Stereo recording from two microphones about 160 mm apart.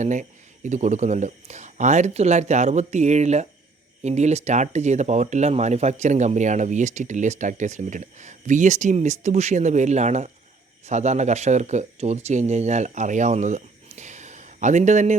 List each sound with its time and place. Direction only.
0.0 s speech: 50° right (ahead or behind)